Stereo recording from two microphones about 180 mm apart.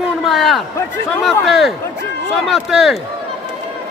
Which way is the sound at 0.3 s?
Centre (ahead or behind).